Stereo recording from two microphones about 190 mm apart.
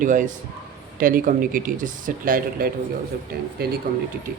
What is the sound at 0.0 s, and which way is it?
Speech, 45° right (ahead or behind).